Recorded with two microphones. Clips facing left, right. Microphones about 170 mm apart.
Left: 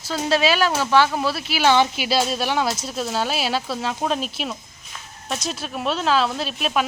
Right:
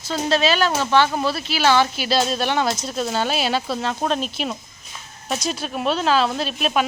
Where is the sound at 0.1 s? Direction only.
10° left (ahead or behind).